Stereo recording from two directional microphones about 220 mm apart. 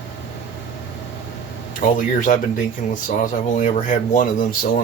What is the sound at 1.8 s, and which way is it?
Speech, 40° left (ahead or behind).